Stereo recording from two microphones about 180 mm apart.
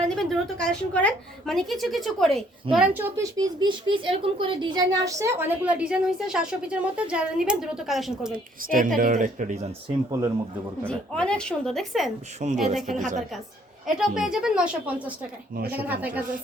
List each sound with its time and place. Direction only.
0.0 s a woman's voice: 5° left (ahead or behind)
8.6 s speech: 50° right (ahead or behind)
9.9 s speech: 15° right (ahead or behind)
10.8 s a woman's voice: 5° left (ahead or behind)
12.4 s speech: 40° right (ahead or behind)
13.8 s a woman's voice: 5° right (ahead or behind)